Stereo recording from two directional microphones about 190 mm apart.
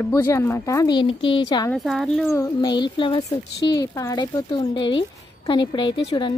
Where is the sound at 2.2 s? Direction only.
15° left (ahead or behind).